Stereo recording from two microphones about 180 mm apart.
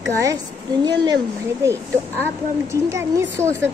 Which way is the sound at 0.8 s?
25° right (ahead or behind).